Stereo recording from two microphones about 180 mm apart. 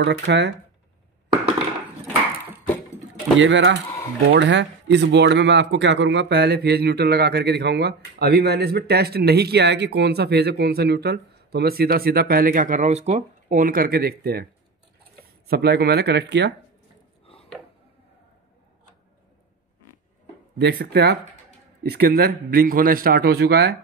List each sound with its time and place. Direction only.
0.0 s speech: 75° right (ahead or behind)
3.3 s a man's voice: 90° right; by 16.5 s 70° right (ahead or behind)
20.5 s a man's voice: 65° right (ahead or behind)